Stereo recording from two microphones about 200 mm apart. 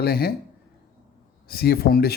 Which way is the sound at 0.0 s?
50° left (ahead or behind).